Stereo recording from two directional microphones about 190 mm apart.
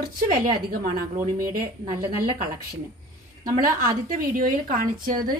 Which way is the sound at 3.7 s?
45° right (ahead or behind).